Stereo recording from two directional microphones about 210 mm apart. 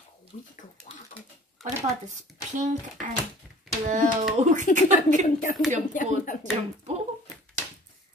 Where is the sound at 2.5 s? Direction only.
35° right (ahead or behind).